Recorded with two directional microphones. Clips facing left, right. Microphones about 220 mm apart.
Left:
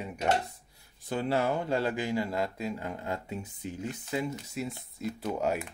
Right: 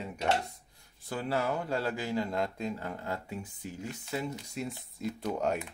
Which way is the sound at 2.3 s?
5° left (ahead or behind).